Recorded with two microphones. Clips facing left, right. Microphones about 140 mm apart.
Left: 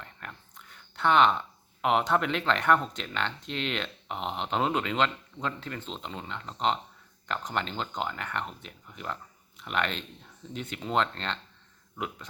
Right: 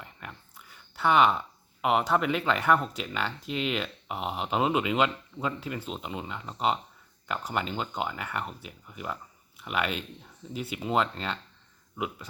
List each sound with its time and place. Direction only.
0.0 s speech: 5° right (ahead or behind)